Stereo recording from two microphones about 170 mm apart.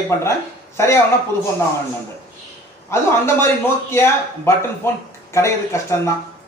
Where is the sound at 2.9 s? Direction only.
15° left (ahead or behind).